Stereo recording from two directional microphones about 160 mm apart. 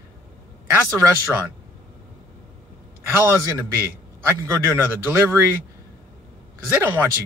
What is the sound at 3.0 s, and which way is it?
A man's voice, 15° right (ahead or behind).